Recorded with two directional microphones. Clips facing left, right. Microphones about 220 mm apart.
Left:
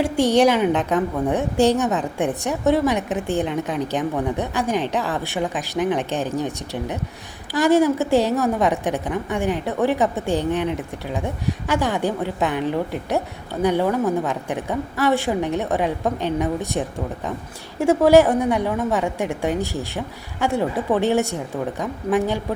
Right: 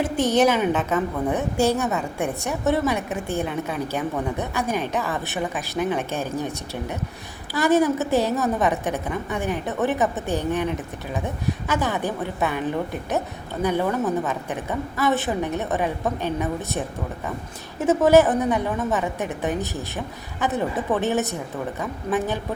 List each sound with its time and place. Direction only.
0.0 s a woman's voice: 15° left (ahead or behind)